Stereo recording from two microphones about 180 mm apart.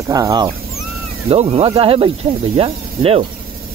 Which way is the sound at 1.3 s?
35° right (ahead or behind).